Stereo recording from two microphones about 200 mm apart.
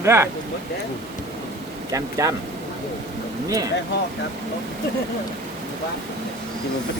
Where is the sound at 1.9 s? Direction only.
15° right (ahead or behind).